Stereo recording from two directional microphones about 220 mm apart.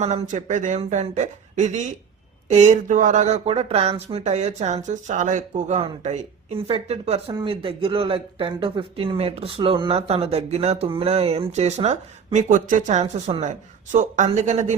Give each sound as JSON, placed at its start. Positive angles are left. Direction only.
{"t": 0.0, "sound": "speech", "side_deg": -30}